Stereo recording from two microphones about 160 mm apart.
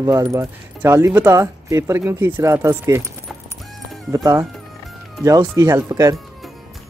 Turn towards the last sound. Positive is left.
turn(degrees=-20)  # may be behind; listen again after turning